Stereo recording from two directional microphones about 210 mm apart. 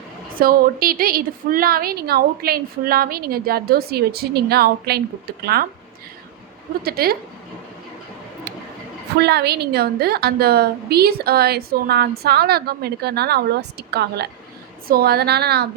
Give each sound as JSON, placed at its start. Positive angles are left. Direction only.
{"t": 0.3, "sound": "a woman's voice", "side_deg": -45}
{"t": 6.8, "sound": "a woman's voice", "side_deg": -45}
{"t": 9.1, "sound": "a woman's voice", "side_deg": -50}